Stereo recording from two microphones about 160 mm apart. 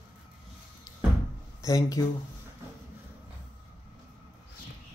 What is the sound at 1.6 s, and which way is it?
Speech, 20° left (ahead or behind).